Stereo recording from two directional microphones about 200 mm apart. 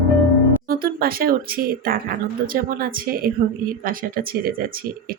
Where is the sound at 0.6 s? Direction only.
45° right (ahead or behind).